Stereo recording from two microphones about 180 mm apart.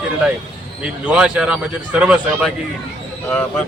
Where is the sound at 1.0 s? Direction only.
5° right (ahead or behind).